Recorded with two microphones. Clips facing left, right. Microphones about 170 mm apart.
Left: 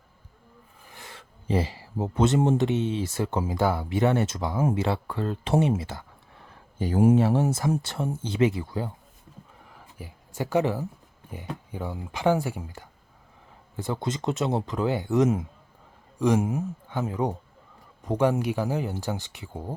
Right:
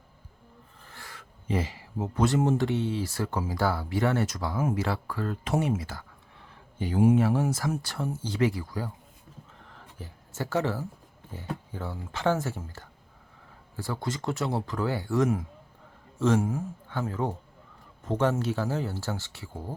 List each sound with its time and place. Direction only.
0.9 s speech: 20° left (ahead or behind)
6.7 s speech: 45° left (ahead or behind)
7.2 s speech: 30° left (ahead or behind)
9.6 s a sound: 10° left (ahead or behind)
11.3 s speech: 15° left (ahead or behind)